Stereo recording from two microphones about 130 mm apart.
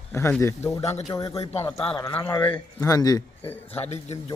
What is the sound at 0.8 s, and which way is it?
Speech, 55° left (ahead or behind).